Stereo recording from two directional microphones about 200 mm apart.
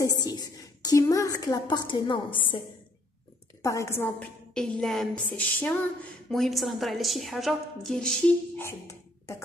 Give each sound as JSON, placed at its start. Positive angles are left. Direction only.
{"t": 0.0, "sound": "a woman's voice", "side_deg": 20}
{"t": 3.6, "sound": "a woman's voice", "side_deg": 15}